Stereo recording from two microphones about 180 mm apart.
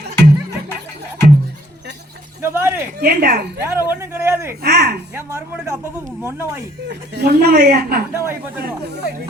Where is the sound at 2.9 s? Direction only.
60° right (ahead or behind).